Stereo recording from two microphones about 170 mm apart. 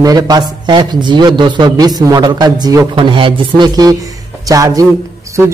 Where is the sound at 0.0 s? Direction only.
20° right (ahead or behind).